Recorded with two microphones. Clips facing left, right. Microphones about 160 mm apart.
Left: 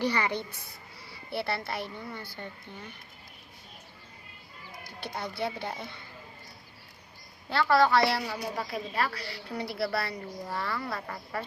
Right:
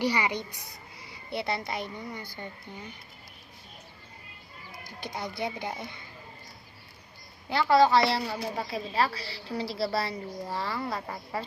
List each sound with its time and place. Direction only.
0.0 s speech: 10° right (ahead or behind)
4.9 s speech: 15° right (ahead or behind)
7.5 s a woman's voice: 20° right (ahead or behind)